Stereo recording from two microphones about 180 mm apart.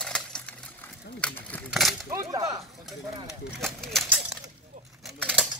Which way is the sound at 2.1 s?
15° right (ahead or behind).